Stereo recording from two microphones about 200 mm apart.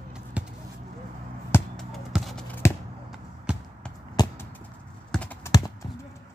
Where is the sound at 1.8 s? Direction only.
Centre (ahead or behind).